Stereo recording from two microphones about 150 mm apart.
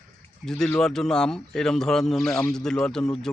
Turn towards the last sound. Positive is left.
turn(degrees=5)  # may be behind; listen again after turning